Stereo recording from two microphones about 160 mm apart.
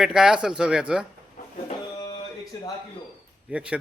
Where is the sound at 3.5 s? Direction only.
10° right (ahead or behind).